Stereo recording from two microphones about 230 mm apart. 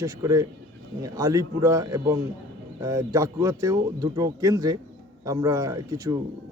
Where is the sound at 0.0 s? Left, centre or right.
Centre.